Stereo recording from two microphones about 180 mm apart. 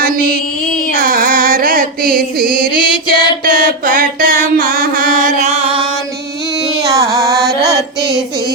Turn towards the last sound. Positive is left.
turn(degrees=-20)  # may be behind; listen again after turning